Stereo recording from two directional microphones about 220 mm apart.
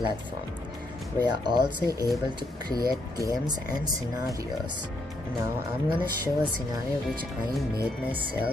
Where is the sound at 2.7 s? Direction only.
15° right (ahead or behind).